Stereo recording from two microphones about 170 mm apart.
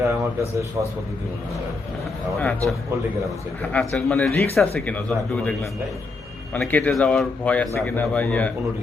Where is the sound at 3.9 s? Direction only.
5° left (ahead or behind).